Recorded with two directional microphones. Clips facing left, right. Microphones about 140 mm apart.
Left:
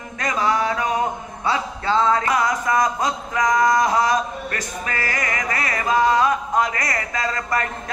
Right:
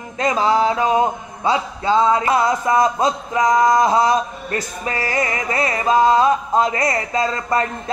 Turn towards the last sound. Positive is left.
turn(degrees=-25)  # may be behind; listen again after turning